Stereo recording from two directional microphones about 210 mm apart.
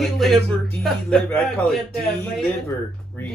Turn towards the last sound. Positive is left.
turn(degrees=5)  # may be behind; listen again after turning